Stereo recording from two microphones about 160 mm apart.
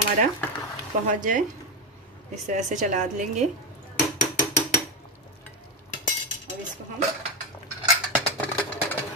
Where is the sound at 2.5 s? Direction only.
50° right (ahead or behind).